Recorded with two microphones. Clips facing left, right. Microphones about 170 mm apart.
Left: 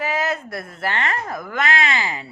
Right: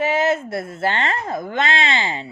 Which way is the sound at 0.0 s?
25° right (ahead or behind).